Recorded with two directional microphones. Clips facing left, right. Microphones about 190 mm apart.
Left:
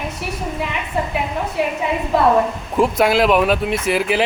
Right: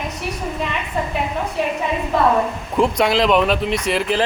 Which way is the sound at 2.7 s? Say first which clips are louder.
Left 1 dB; centre (ahead or behind).